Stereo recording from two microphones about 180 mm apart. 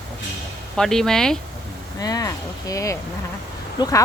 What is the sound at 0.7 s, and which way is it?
Speech, centre (ahead or behind).